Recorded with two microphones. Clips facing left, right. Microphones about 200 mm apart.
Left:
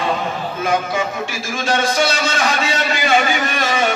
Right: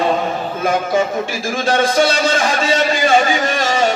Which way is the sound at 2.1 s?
35° right (ahead or behind).